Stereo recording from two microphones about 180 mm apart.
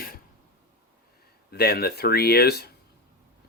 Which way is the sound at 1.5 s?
60° left (ahead or behind).